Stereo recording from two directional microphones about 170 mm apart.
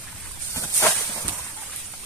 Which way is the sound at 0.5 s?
15° left (ahead or behind).